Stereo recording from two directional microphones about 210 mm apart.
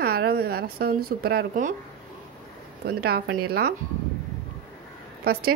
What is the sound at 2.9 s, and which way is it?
Speech, 50° right (ahead or behind).